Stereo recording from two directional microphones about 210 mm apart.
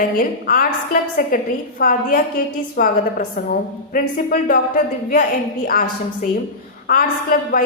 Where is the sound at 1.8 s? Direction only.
40° left (ahead or behind).